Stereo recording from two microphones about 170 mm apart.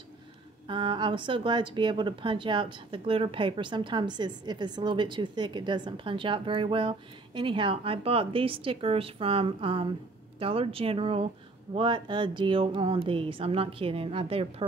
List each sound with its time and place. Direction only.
0.7 s speech: 30° right (ahead or behind)